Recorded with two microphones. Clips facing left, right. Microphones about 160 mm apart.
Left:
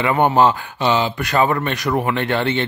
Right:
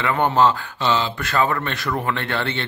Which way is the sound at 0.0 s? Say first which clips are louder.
Left 3 dB; 15° left (ahead or behind).